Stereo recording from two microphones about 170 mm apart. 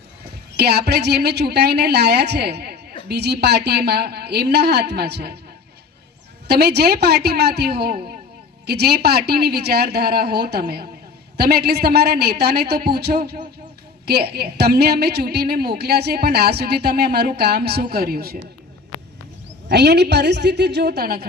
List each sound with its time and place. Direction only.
0.5 s a woman's voice: 70° right (ahead or behind)
6.5 s a woman's voice: 70° right (ahead or behind)
19.6 s a woman's voice: 75° right (ahead or behind)